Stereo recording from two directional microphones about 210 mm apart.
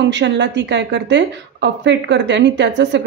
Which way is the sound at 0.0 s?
55° right (ahead or behind).